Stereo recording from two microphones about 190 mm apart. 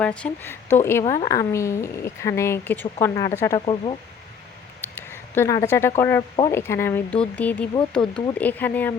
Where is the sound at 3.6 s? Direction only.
25° left (ahead or behind).